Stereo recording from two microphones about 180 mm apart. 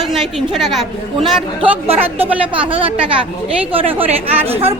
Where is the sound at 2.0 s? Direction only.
10° right (ahead or behind).